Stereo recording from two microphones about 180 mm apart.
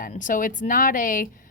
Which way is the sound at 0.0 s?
45° left (ahead or behind).